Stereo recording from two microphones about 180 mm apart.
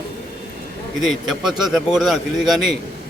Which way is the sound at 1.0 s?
Centre (ahead or behind).